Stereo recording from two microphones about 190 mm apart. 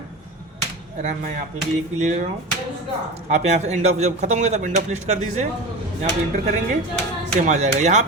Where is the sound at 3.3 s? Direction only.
35° right (ahead or behind).